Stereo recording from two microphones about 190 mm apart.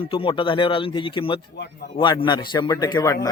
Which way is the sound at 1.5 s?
60° left (ahead or behind).